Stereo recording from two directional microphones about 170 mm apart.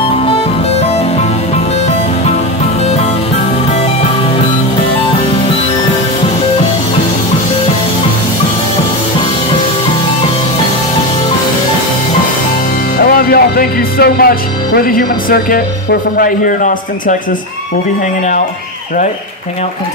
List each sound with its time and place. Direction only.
13.0 s music: 60° left (ahead or behind)